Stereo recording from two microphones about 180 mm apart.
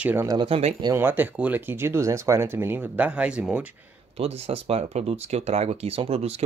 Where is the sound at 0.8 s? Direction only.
10° right (ahead or behind).